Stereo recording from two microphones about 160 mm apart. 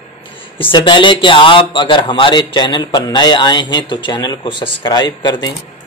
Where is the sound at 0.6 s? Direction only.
30° left (ahead or behind).